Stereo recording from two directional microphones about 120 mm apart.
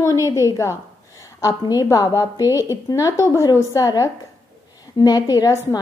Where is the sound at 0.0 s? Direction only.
25° left (ahead or behind).